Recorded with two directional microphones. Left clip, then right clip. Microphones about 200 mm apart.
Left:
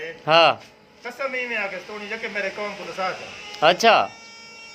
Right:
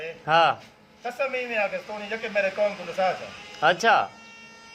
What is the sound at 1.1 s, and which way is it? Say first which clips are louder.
Speech: left 1 dB; centre (ahead or behind).